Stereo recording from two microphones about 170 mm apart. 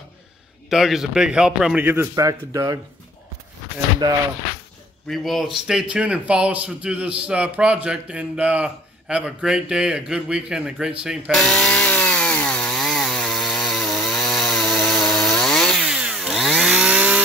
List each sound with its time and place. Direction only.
0.7 s a man's voice: centre (ahead or behind); by 2.8 s 20° right (ahead or behind)
4.0 s speech: 25° right (ahead or behind)
5.0 s a sound: centre (ahead or behind)